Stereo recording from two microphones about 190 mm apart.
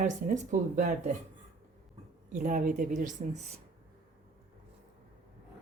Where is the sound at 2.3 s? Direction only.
40° right (ahead or behind).